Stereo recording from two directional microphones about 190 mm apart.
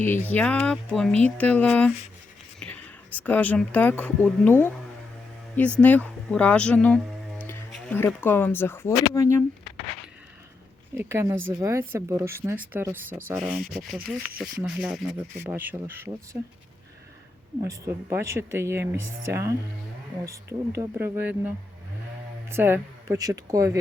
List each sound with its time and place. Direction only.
0.0 s speech: 10° left (ahead or behind)
5.8 s speech: 5° left (ahead or behind)
10.9 s speech: 15° right (ahead or behind)
17.6 s speech: 15° right (ahead or behind)